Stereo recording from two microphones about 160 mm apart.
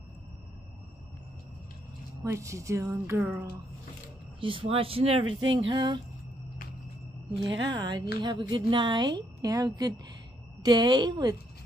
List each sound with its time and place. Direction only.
2.2 s speech: 20° right (ahead or behind)
4.4 s speech: 35° right (ahead or behind)
7.4 s speech: 25° right (ahead or behind)